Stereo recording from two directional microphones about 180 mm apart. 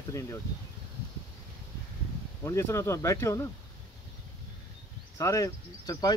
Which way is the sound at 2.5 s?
15° left (ahead or behind).